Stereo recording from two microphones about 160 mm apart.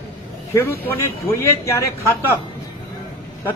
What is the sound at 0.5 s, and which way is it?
A man's voice, 15° left (ahead or behind).